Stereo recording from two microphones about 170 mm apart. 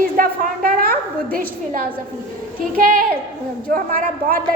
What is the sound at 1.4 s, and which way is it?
A woman's voice, 55° right (ahead or behind).